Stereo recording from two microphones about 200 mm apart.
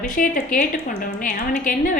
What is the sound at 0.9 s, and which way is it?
A woman's voice, 50° left (ahead or behind).